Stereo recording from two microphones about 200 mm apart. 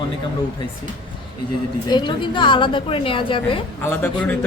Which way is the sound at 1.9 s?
25° left (ahead or behind).